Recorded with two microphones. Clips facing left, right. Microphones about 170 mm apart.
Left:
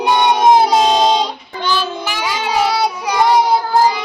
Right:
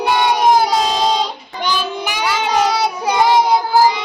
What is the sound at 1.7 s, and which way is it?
Child singing, 15° right (ahead or behind).